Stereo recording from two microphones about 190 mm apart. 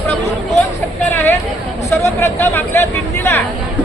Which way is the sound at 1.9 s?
15° left (ahead or behind).